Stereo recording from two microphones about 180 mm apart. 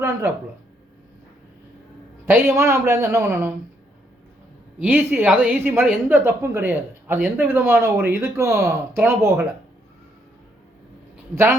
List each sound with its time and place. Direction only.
2.2 s a woman's voice: 15° right (ahead or behind)
4.8 s a woman's voice: 10° right (ahead or behind)